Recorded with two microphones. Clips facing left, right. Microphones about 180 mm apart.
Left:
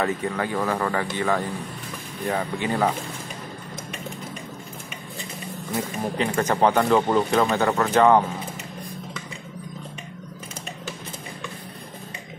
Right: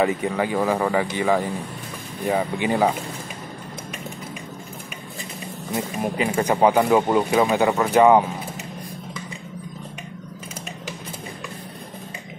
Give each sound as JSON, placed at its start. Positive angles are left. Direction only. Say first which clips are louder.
{"t": 0.0, "sound": "speech", "louder": "right 4 dB", "side_deg": -10}
{"t": 6.0, "sound": "speech", "louder": "right 2 dB", "side_deg": -10}